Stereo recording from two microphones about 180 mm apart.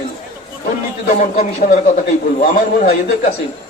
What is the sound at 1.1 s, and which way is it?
Speech, 45° left (ahead or behind).